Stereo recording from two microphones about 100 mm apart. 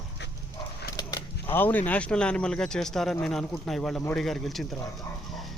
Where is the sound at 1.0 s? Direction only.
35° left (ahead or behind).